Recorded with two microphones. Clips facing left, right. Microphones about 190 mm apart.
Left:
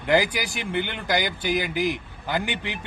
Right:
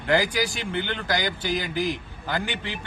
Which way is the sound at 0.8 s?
10° left (ahead or behind).